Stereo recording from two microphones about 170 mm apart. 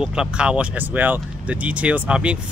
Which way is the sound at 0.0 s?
5° right (ahead or behind).